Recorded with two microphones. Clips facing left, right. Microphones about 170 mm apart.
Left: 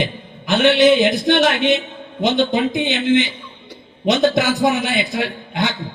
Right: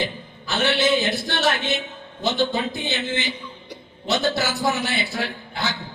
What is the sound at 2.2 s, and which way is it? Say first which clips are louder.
Speech: left 6 dB; 15° left (ahead or behind).